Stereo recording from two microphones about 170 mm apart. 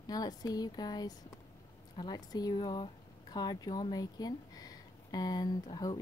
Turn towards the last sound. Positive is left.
turn(degrees=25)  # may be behind; listen again after turning